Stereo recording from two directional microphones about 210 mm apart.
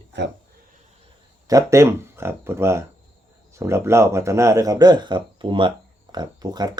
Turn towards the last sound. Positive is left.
turn(degrees=-20)  # may be behind; listen again after turning